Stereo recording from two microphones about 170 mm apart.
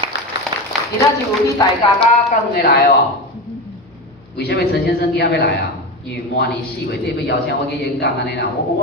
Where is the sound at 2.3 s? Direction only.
60° left (ahead or behind).